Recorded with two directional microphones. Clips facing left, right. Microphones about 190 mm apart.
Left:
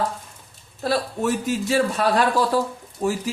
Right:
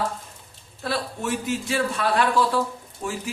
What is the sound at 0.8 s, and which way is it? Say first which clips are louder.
A man's voice: left 5 dB; 40° left (ahead or behind).